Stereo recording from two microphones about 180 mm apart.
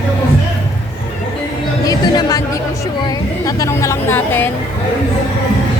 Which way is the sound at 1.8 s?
20° left (ahead or behind).